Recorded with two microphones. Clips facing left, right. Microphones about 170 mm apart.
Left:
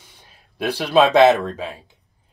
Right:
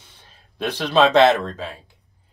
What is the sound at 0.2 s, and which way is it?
Speech, 10° left (ahead or behind).